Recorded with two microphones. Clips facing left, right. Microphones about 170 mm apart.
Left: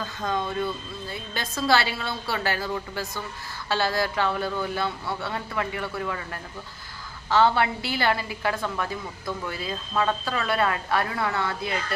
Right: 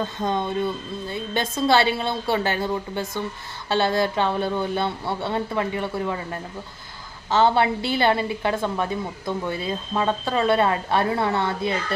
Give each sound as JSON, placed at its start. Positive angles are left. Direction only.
{"t": 0.0, "sound": "a woman's voice", "side_deg": -25}